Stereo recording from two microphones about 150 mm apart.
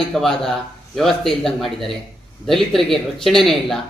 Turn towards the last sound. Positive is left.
turn(degrees=0)  # may be behind; listen again after turning